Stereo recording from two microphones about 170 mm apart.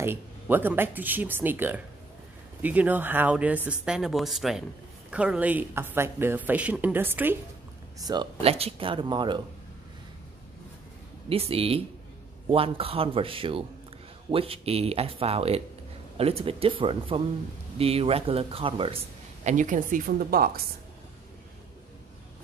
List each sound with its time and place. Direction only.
0.0 s speech: 10° right (ahead or behind)
8.0 s speech: 25° right (ahead or behind)
11.2 s speech: 35° right (ahead or behind)
19.4 s a woman's voice: 50° right (ahead or behind)